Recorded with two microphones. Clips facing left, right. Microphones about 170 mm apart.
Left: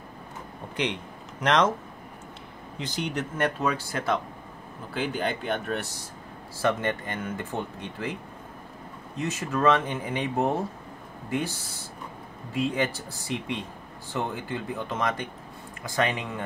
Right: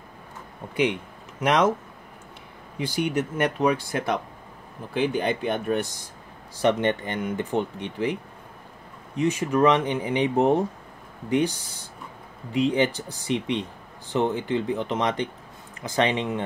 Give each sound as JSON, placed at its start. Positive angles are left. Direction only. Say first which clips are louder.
{"t": 1.4, "sound": "speech", "louder": "right 2 dB", "side_deg": -10}
{"t": 2.8, "sound": "speech", "louder": "right 6 dB", "side_deg": -10}